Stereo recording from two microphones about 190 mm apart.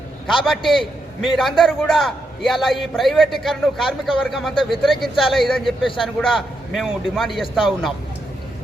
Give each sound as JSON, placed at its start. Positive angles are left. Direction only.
{"t": 0.3, "sound": "a man's voice", "side_deg": 0}